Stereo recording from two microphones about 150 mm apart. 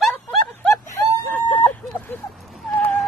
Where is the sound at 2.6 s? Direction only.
5° left (ahead or behind).